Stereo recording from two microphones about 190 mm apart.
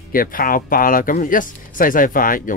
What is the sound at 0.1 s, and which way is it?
Speech, 50° left (ahead or behind).